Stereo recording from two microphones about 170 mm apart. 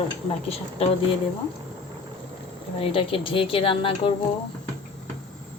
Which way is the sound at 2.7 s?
35° left (ahead or behind).